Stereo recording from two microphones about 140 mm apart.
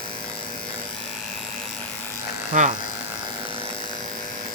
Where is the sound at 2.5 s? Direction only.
65° right (ahead or behind).